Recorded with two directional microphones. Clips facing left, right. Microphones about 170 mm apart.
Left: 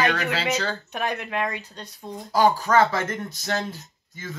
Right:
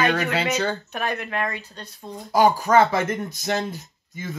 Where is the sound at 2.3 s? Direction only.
15° right (ahead or behind).